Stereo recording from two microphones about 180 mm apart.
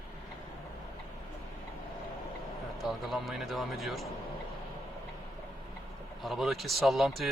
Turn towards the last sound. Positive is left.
turn(degrees=0)  # may be behind; listen again after turning